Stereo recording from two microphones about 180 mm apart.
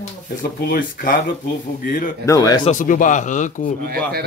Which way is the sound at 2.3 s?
20° left (ahead or behind).